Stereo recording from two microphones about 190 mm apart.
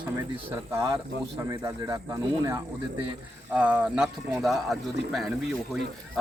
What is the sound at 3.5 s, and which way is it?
A man's voice, 5° right (ahead or behind).